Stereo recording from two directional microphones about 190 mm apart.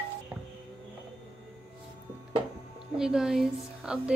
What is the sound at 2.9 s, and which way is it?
A woman's voice, 5° right (ahead or behind).